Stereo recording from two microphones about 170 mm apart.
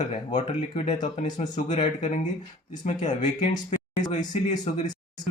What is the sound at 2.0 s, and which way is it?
Speech, 45° left (ahead or behind).